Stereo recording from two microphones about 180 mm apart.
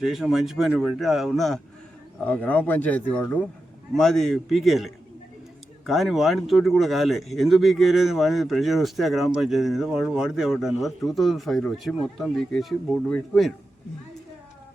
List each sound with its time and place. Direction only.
0.0 s speech: centre (ahead or behind)